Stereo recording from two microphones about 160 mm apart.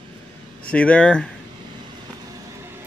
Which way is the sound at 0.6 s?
5° left (ahead or behind).